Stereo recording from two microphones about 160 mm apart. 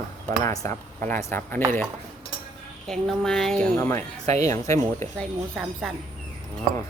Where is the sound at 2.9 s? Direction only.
5° left (ahead or behind); by 4.8 s 20° left (ahead or behind).